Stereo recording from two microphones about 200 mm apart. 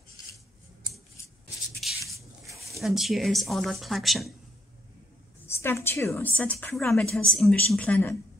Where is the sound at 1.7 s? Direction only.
Centre (ahead or behind).